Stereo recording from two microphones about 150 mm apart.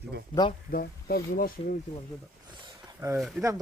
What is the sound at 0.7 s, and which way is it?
Speech, 80° left.